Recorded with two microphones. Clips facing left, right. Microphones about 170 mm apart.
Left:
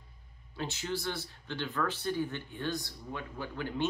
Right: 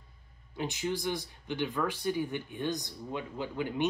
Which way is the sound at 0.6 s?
15° right (ahead or behind).